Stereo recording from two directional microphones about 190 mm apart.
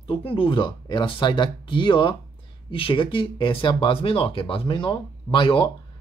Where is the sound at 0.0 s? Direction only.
30° left (ahead or behind).